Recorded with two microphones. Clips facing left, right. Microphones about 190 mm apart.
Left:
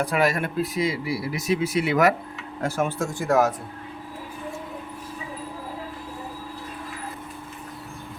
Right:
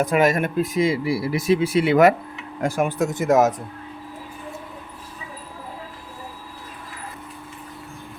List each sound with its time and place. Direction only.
0.1 s speech: 20° right (ahead or behind)
2.6 s speech: 15° right (ahead or behind)